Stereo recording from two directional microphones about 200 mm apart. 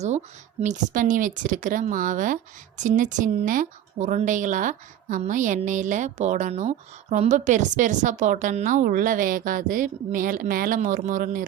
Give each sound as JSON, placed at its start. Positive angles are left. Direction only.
{"t": 0.6, "sound": "speech", "side_deg": -40}